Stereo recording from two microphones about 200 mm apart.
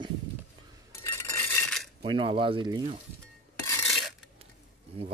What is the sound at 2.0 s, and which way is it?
Speech, 25° right (ahead or behind).